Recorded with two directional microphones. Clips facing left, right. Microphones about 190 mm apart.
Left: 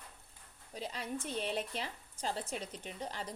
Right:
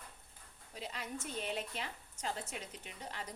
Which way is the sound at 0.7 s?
35° left (ahead or behind).